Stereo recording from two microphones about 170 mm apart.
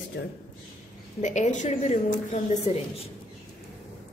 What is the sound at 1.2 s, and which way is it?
Speech, 45° left (ahead or behind).